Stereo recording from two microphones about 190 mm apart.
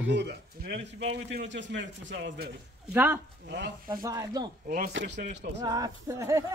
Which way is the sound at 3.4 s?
55° right (ahead or behind).